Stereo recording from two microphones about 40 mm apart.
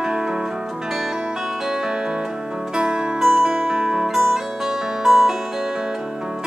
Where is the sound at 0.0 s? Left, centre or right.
Centre.